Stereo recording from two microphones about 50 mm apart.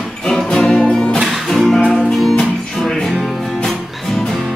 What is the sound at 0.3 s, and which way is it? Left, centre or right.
Music, centre.